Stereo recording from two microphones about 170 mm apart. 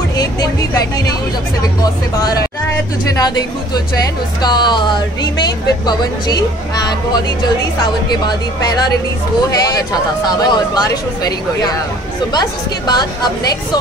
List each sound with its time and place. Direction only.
0.2 s speech: 20° left (ahead or behind)
1.8 s speech: 20° left (ahead or behind)
8.1 s speech: 25° left (ahead or behind)
12.3 s speech: 25° left (ahead or behind)